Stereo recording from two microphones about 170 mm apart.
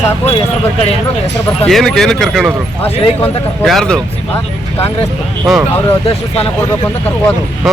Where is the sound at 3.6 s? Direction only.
Centre (ahead or behind).